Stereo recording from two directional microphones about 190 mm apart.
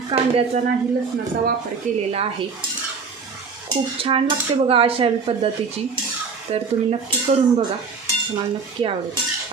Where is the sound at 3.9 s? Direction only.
30° right (ahead or behind).